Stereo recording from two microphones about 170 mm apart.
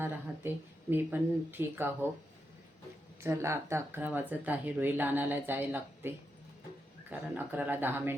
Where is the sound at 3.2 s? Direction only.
15° right (ahead or behind).